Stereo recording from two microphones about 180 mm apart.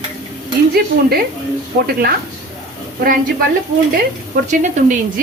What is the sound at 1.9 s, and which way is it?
Speech, 60° right (ahead or behind).